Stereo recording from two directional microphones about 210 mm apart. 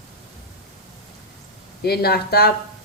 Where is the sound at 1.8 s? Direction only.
50° left (ahead or behind).